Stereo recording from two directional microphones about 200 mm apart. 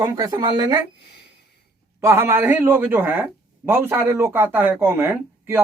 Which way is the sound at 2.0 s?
15° right (ahead or behind).